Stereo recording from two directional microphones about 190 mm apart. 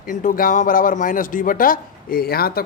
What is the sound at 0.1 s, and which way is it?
Speech, 45° left (ahead or behind).